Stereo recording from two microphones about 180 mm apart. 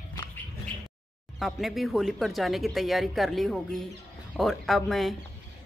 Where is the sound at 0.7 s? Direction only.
25° right (ahead or behind).